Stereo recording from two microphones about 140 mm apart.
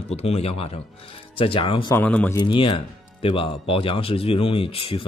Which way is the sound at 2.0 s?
15° left (ahead or behind).